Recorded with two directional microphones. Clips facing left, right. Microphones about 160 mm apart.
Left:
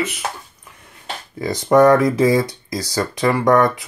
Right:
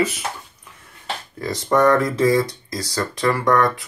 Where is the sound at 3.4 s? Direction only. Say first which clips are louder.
Left 4 dB; 20° left (ahead or behind).